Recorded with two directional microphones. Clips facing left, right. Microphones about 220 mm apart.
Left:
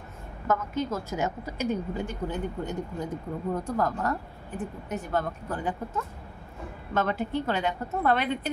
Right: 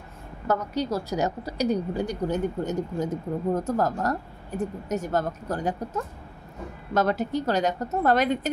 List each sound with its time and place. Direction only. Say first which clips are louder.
0.5 s speech: right 2 dB; 35° right (ahead or behind)
6.9 s speech: right 4 dB; 40° right (ahead or behind)